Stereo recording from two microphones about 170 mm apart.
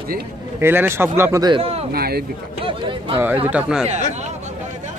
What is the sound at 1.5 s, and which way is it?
Speech, 35° right (ahead or behind).